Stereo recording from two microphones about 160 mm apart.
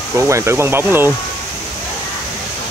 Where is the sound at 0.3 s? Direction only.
15° right (ahead or behind).